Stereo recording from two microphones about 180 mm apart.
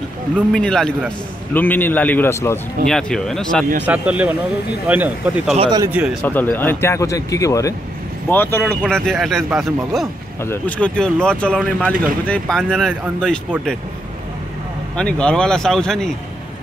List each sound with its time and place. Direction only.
0.5 s speech: 5° left (ahead or behind)
3.8 s speech: 10° right (ahead or behind)
5.6 s speech: 25° right (ahead or behind)
5.9 s speech: 10° right (ahead or behind)
6.2 s speech: 10° left (ahead or behind)
8.8 s speech: centre (ahead or behind)
10.4 s speech: 10° left (ahead or behind)
15.0 s speech: 5° left (ahead or behind)